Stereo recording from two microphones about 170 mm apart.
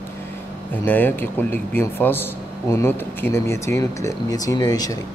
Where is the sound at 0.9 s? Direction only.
10° left (ahead or behind).